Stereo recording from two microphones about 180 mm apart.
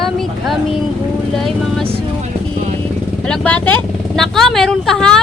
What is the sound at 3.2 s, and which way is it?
Speech, 5° left (ahead or behind).